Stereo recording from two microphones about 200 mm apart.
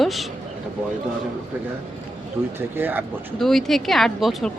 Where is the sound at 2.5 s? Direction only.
10° right (ahead or behind).